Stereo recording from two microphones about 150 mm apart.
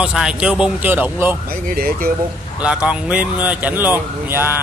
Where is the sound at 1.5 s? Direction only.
80° right.